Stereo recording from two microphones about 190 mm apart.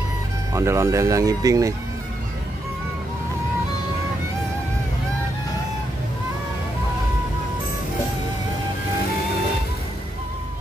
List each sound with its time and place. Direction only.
0.5 s speech: 15° right (ahead or behind)